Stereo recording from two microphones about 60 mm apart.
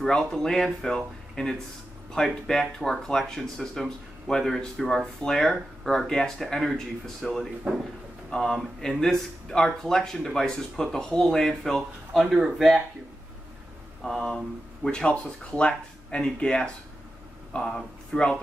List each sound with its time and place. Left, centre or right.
0.0 s speech: centre
14.0 s speech: centre